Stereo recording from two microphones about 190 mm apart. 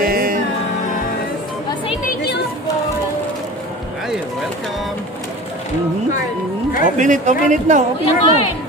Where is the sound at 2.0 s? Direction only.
60° left (ahead or behind).